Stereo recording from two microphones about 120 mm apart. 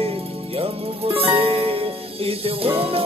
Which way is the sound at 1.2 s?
55° right (ahead or behind).